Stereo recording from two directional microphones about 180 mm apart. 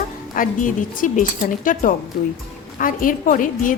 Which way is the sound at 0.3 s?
45° left (ahead or behind).